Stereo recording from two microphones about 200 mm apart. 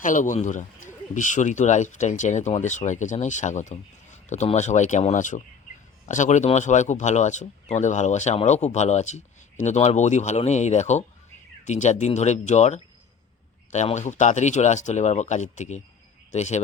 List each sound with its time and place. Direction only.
0.0 s speech: 40° left (ahead or behind)